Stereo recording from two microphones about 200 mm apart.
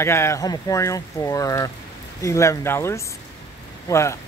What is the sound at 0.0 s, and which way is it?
Speech, 15° left (ahead or behind).